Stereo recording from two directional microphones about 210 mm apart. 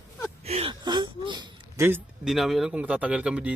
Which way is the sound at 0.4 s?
30° right (ahead or behind).